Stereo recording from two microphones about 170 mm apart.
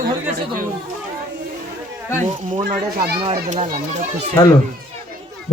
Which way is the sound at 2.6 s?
60° right (ahead or behind).